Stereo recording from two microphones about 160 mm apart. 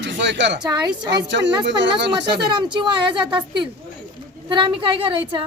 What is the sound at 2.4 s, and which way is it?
A woman's voice, 30° right (ahead or behind).